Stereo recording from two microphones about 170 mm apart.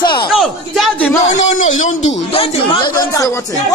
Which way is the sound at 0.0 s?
25° left (ahead or behind).